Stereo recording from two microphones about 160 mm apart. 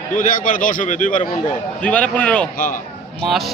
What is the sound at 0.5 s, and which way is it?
Speech, 60° left (ahead or behind).